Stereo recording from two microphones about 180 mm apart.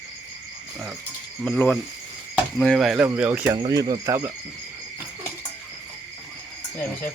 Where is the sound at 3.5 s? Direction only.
25° right (ahead or behind).